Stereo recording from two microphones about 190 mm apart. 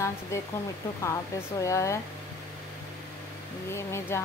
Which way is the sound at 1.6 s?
15° left (ahead or behind).